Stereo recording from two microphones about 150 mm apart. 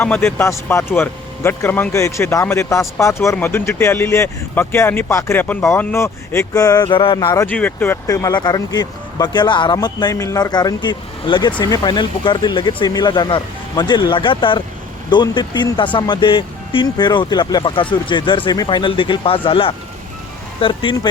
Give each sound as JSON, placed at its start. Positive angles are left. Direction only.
{"t": 0.0, "sound": "speech", "side_deg": 15}
{"t": 6.8, "sound": "speech", "side_deg": 35}
{"t": 7.4, "sound": "speech", "side_deg": 10}